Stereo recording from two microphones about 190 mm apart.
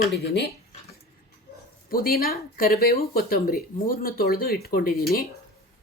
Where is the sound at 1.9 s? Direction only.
50° left (ahead or behind).